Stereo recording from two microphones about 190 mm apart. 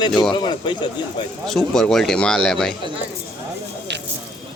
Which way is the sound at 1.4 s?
Centre (ahead or behind).